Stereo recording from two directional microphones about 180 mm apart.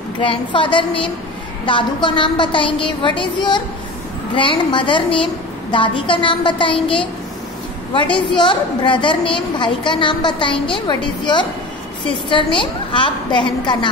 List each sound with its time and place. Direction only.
0.2 s a woman's voice: 30° left (ahead or behind)